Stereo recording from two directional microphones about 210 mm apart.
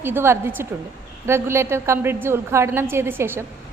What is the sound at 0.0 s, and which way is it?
A woman's voice, 10° right (ahead or behind).